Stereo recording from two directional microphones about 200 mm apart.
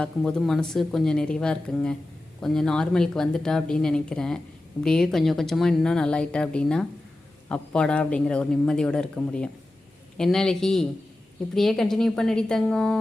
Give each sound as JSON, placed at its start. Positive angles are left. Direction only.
{"t": 0.0, "sound": "speech", "side_deg": 5}